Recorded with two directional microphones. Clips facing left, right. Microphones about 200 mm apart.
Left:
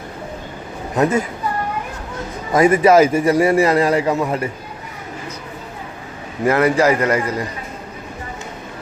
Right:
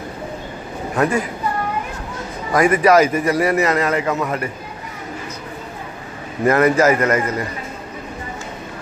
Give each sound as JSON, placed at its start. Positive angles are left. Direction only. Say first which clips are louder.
{"t": 0.9, "sound": "a man's voice", "louder": "left 2 dB", "side_deg": 20}
{"t": 2.5, "sound": "a man's voice", "louder": "left 2 dB", "side_deg": 25}
{"t": 6.4, "sound": "a man's voice", "louder": "right 1 dB", "side_deg": 10}